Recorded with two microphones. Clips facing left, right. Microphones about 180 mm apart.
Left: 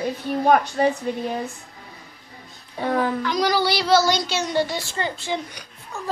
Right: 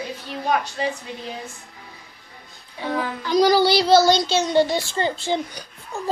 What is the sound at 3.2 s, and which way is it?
Speech, 30° right (ahead or behind).